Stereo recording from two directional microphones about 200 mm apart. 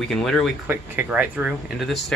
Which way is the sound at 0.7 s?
10° right (ahead or behind).